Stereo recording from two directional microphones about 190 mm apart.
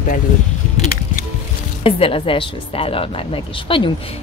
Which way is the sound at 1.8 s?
30° left (ahead or behind).